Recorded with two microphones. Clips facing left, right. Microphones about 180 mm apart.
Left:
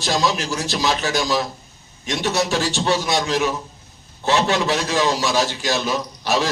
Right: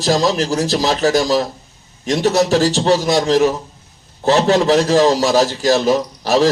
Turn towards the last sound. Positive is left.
turn(degrees=-35)  # may be behind; listen again after turning